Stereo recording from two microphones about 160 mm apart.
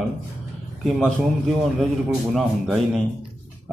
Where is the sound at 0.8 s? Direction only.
Centre (ahead or behind).